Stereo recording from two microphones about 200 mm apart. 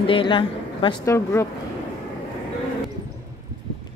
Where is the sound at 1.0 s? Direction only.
15° left (ahead or behind).